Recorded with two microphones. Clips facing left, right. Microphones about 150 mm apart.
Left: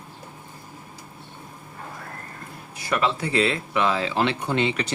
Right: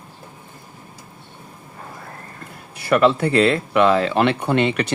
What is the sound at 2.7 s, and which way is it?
Speech, 60° right (ahead or behind).